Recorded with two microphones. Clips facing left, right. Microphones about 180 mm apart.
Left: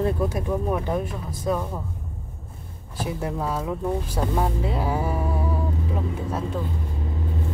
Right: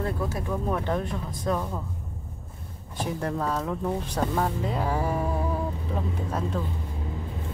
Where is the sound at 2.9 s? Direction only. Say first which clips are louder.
Left 1 dB; 5° left (ahead or behind).